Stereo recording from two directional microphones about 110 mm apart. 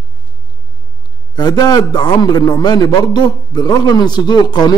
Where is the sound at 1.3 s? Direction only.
40° left (ahead or behind).